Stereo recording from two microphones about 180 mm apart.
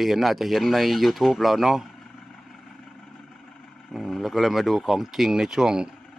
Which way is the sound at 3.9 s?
Centre (ahead or behind).